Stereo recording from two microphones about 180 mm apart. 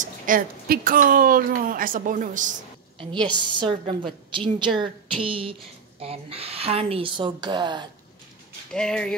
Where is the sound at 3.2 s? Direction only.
25° right (ahead or behind).